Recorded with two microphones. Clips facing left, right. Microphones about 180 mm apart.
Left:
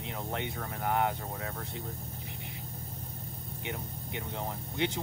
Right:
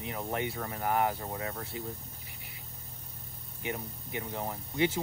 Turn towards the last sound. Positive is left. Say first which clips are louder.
# right 3 dB
turn(degrees=-5)  # may be behind; listen again after turning